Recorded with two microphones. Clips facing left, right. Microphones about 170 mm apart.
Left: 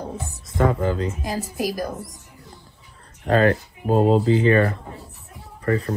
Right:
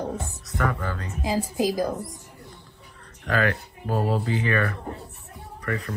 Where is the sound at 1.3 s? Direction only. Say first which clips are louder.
Right 7 dB; 20° right (ahead or behind).